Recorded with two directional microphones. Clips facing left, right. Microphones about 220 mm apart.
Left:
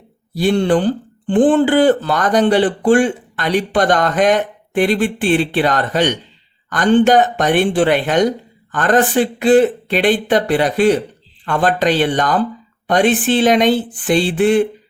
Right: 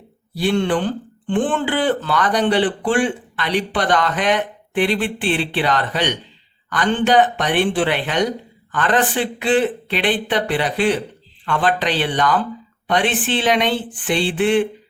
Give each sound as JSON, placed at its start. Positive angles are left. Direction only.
{"t": 0.3, "sound": "speech", "side_deg": 40}